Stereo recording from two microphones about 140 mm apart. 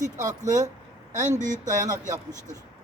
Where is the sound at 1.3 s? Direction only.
60° right (ahead or behind).